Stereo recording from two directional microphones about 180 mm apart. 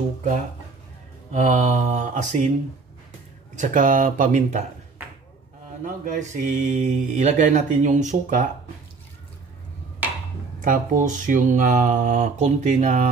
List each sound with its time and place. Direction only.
1.3 s speech: 40° right (ahead or behind)
3.5 s speech: 45° right (ahead or behind)
5.9 s speech: 45° right (ahead or behind)
10.6 s speech: 50° right (ahead or behind)